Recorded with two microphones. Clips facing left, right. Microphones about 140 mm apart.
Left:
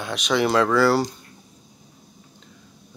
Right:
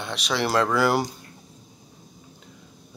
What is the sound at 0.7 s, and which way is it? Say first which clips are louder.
Speech: left 3 dB; 15° right (ahead or behind).